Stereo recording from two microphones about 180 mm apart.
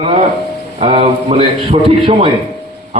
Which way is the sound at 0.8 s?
30° right (ahead or behind).